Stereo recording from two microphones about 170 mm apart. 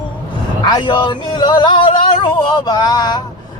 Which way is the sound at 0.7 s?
25° left (ahead or behind).